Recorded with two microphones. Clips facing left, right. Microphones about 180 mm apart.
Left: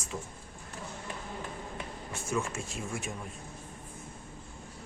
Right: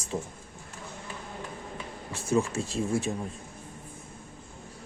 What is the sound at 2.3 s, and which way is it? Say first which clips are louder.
Speech: right 7 dB; 35° right (ahead or behind).